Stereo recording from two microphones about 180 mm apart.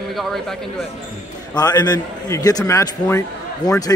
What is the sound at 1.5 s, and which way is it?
A man's voice, 20° left (ahead or behind).